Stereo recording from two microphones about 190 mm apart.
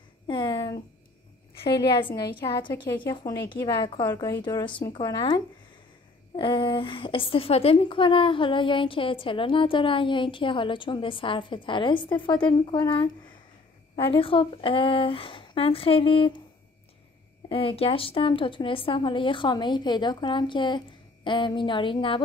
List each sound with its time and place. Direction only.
0.3 s a sound: 25° left (ahead or behind)
1.6 s a woman's voice: 25° left (ahead or behind)
17.5 s a woman's voice: 30° left (ahead or behind)